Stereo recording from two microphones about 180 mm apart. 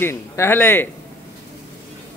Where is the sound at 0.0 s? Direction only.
15° left (ahead or behind).